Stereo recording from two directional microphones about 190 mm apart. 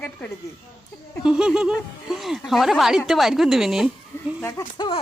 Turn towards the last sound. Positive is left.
turn(degrees=25)  # may be behind; listen again after turning